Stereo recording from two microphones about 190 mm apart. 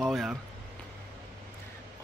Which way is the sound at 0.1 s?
Centre (ahead or behind).